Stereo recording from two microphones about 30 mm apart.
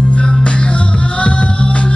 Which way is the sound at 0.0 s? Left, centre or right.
Left.